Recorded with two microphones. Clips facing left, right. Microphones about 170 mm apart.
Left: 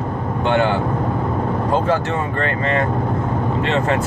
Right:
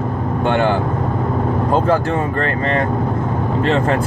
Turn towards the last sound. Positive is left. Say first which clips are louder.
# right 2 dB
turn(degrees=-45)  # may be behind; listen again after turning